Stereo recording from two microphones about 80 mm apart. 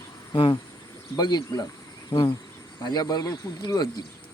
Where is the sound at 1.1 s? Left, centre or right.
Left.